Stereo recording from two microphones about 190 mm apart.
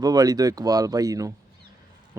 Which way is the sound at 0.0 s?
20° right (ahead or behind).